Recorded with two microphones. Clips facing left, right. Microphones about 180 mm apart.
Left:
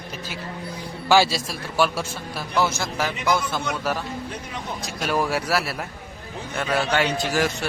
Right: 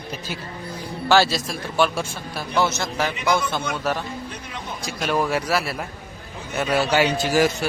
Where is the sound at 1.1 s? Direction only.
10° left (ahead or behind).